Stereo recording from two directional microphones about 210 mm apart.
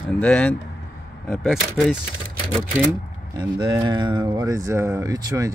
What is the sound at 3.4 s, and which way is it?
Speech, 20° right (ahead or behind).